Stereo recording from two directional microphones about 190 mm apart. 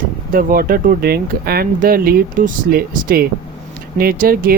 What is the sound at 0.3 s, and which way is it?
Speech, 50° right (ahead or behind).